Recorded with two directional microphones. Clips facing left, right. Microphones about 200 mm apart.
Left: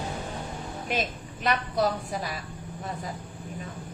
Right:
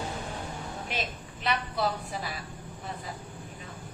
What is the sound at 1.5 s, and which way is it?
Speech, 45° left (ahead or behind).